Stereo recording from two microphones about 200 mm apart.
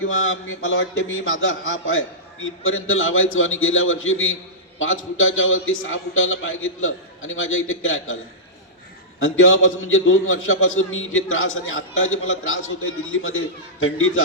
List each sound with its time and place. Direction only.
0.2 s a man's voice: 80° left
9.2 s a man's voice: 80° left